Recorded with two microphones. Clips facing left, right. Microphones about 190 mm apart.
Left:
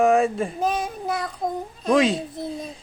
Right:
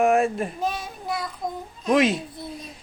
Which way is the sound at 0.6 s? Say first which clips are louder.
Left 6 dB; 40° left (ahead or behind).